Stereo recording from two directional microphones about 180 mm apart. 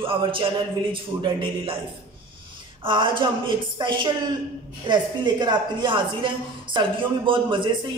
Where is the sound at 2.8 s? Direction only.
30° right (ahead or behind).